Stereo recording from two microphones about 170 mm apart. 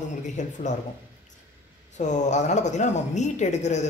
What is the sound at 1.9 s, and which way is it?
A man's voice, 45° left (ahead or behind).